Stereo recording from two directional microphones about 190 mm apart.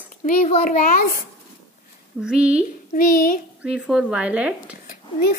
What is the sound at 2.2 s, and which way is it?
Speech, 5° right (ahead or behind).